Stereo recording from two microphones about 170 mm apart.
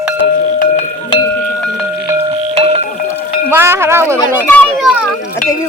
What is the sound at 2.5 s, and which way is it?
Music, 35° right (ahead or behind).